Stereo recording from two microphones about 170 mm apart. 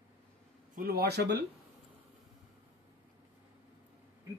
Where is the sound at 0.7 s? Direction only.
65° right (ahead or behind).